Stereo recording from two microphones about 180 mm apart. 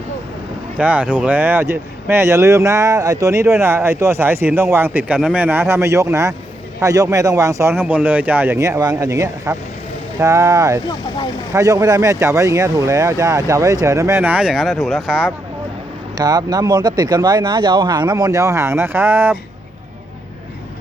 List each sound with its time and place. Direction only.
0.8 s speech: 10° right (ahead or behind)
16.1 s speech: 20° right (ahead or behind)